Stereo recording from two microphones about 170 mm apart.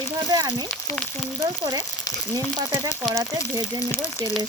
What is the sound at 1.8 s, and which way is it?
Frying, 20° left (ahead or behind).